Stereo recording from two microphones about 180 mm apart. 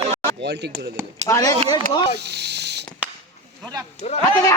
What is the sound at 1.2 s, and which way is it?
Speech, 20° left (ahead or behind).